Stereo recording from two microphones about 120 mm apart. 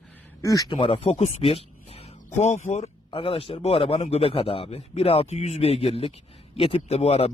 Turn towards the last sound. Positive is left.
turn(degrees=60)  # may be behind; listen again after turning